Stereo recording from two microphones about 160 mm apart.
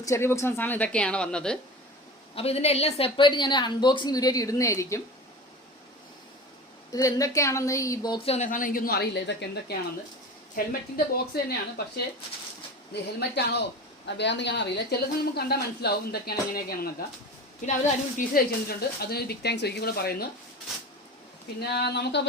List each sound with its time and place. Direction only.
0.0 s a woman's voice: 15° left (ahead or behind)
2.3 s a woman's voice: 40° left (ahead or behind); by 5.0 s 20° left (ahead or behind)
6.9 s a woman's voice: 20° left (ahead or behind); by 8.4 s 40° left (ahead or behind)
8.4 s a woman's voice: 60° left (ahead or behind); by 9.7 s 90° left
10.5 s a woman's voice: 65° left (ahead or behind)
12.9 s speech: 90° left; by 16.9 s 70° left (ahead or behind)
17.7 s a woman's voice: 55° left (ahead or behind); by 20.2 s 75° left (ahead or behind)
21.6 s speech: 90° left